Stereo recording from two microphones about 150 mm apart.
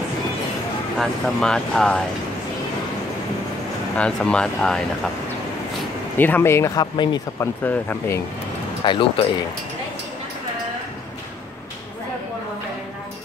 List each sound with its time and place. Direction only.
0.9 s speech: 5° left (ahead or behind)
3.9 s speech: 10° left (ahead or behind)
6.1 s speech: 10° left (ahead or behind); by 7.2 s 30° left (ahead or behind)
7.3 s speech: 10° left (ahead or behind)
8.8 s speech: 35° left (ahead or behind)